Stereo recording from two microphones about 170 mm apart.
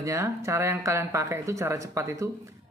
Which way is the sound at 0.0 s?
15° right (ahead or behind).